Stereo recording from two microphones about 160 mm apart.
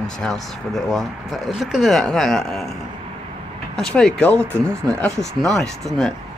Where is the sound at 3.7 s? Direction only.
5° left (ahead or behind).